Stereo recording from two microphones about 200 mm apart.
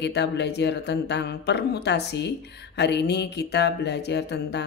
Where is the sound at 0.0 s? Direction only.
60° left (ahead or behind).